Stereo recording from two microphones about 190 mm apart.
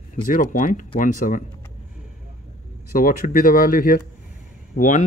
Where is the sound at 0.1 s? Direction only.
45° left (ahead or behind).